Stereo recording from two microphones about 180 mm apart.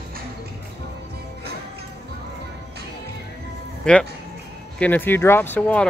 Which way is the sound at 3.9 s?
5° left (ahead or behind).